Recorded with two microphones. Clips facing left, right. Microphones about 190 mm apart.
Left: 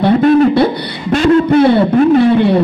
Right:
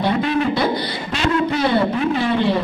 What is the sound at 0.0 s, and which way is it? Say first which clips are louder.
Beatboxing: left 10 dB; 50° left (ahead or behind).